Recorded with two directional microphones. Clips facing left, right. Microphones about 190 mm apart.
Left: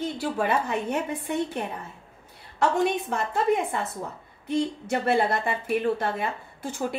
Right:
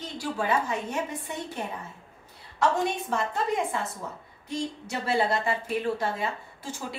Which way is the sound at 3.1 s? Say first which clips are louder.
Left 3 dB; 55° left (ahead or behind).